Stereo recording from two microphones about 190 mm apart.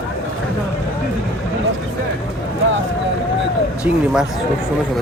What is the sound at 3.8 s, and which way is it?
Speech, 5° right (ahead or behind).